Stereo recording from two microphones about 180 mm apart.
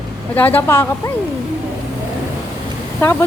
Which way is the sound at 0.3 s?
10° left (ahead or behind).